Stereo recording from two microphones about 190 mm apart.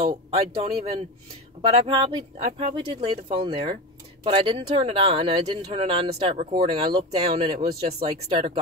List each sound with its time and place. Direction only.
0.0 s speech: 30° right (ahead or behind)